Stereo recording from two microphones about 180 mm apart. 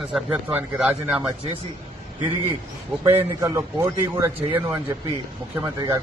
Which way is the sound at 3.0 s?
15° right (ahead or behind).